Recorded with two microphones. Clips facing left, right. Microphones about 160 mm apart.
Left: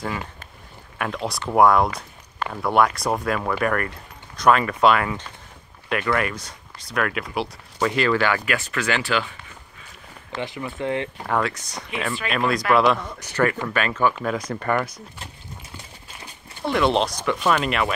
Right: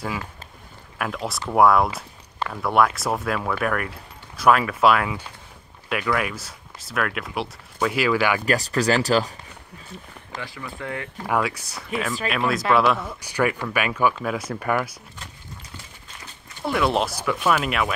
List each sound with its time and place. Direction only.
0.9 s speech: centre (ahead or behind)
8.5 s speech: 35° right (ahead or behind)
10.3 s speech: 20° left (ahead or behind)
11.2 s speech: 10° right (ahead or behind)
16.6 s speech: centre (ahead or behind)